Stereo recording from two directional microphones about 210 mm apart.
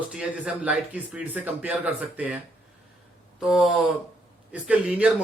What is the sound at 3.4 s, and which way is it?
A man's voice, centre (ahead or behind).